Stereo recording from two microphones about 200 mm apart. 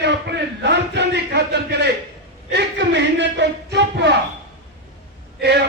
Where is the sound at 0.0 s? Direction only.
60° right (ahead or behind).